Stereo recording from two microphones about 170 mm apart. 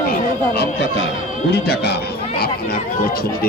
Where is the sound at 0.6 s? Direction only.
90° left.